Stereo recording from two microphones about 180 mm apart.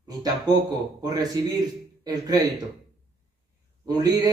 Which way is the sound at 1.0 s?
20° right (ahead or behind).